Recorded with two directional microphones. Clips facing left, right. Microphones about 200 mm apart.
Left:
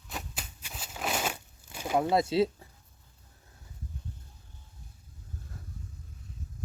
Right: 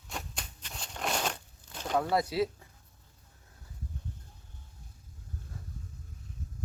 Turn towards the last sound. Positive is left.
turn(degrees=0)  # may be behind; listen again after turning